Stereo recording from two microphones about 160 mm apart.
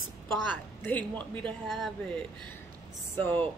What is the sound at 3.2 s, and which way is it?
Speech, 10° left (ahead or behind).